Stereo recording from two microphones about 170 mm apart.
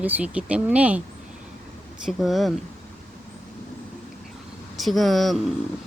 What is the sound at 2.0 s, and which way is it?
Speech, centre (ahead or behind).